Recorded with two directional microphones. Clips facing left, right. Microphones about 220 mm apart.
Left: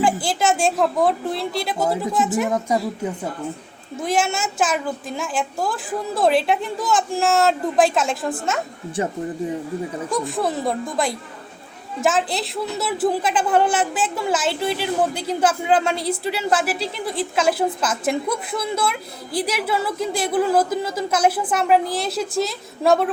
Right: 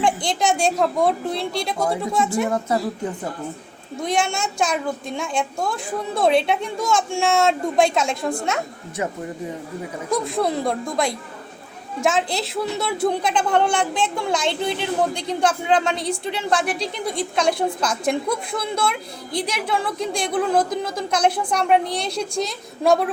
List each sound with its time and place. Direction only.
0.0 s speech: 5° left (ahead or behind)
2.5 s a woman's voice: 10° left (ahead or behind)
9.0 s speech: 30° left (ahead or behind)
10.1 s speech: centre (ahead or behind)